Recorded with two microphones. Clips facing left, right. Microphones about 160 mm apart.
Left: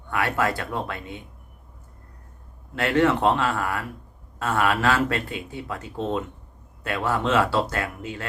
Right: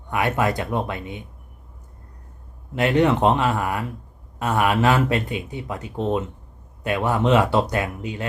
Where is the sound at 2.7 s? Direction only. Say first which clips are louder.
Right 2 dB; 20° right (ahead or behind).